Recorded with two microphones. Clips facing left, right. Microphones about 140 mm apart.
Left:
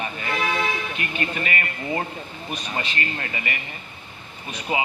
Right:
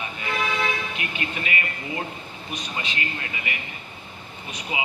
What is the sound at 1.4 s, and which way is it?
Speech, 45° left (ahead or behind).